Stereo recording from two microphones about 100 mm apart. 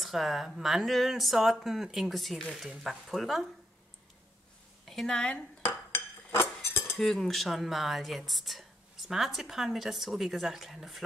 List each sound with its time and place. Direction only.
0.0 s speech: centre (ahead or behind)
4.8 s a woman's voice: 5° left (ahead or behind)
5.6 s dishes: 25° left (ahead or behind)
7.0 s speech: 5° left (ahead or behind)